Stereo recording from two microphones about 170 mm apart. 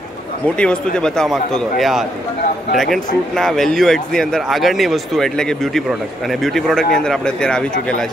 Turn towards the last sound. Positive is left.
turn(degrees=5)  # may be behind; listen again after turning